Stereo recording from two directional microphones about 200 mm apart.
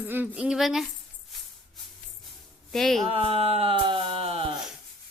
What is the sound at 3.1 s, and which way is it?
Speech, 30° right (ahead or behind).